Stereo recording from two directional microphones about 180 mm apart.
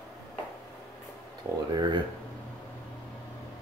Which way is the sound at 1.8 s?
25° right (ahead or behind).